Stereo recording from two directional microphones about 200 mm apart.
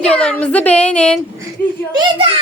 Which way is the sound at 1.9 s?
25° right (ahead or behind).